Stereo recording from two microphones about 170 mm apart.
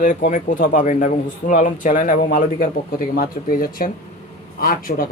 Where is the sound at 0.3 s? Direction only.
50° left (ahead or behind).